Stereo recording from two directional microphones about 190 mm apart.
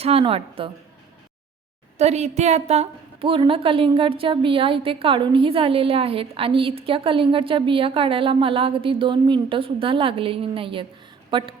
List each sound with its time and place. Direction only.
0.0 s a woman's voice: 30° right (ahead or behind)
2.0 s a woman's voice: 35° right (ahead or behind)